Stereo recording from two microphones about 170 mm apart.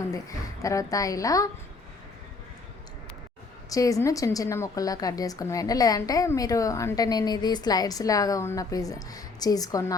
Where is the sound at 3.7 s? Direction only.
20° left (ahead or behind).